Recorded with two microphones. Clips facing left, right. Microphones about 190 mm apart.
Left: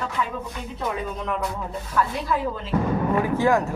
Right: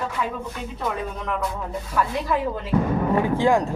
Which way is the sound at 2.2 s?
15° right (ahead or behind).